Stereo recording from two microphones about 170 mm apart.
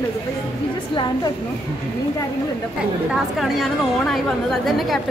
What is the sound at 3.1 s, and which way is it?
A woman's voice, centre (ahead or behind).